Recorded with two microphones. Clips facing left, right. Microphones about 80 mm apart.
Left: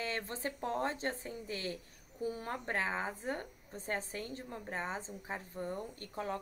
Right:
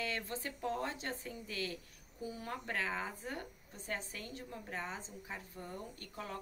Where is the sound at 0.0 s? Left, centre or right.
Left.